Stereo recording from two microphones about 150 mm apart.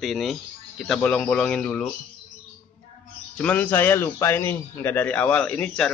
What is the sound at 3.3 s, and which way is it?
A man's voice, 10° left (ahead or behind).